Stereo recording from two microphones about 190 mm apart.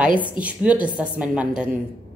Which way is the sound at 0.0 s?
5° right (ahead or behind).